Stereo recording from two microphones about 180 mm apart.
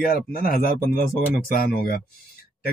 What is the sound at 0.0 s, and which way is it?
A man's voice, 55° left (ahead or behind).